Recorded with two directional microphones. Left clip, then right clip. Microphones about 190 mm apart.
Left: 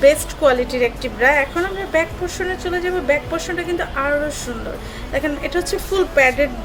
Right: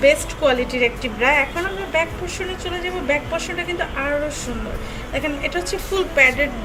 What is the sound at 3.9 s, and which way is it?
A woman's voice, 30° left (ahead or behind).